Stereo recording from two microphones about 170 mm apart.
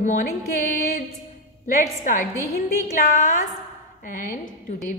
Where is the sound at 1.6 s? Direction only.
50° left (ahead or behind).